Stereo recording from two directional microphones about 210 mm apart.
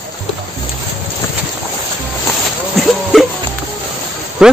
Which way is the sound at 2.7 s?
Centre (ahead or behind).